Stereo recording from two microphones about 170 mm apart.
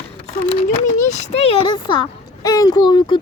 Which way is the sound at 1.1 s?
40° left (ahead or behind).